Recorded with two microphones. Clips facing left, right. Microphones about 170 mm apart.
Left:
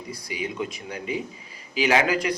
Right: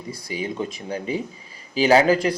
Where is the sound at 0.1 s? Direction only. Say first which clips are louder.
Right 4 dB; 30° right (ahead or behind).